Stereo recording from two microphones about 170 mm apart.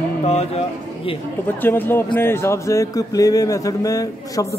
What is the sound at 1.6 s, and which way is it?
A man's voice, 10° left (ahead or behind).